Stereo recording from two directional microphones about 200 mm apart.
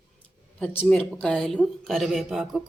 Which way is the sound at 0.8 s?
5° left (ahead or behind).